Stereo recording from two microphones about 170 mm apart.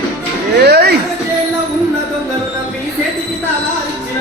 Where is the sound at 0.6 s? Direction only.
70° right (ahead or behind).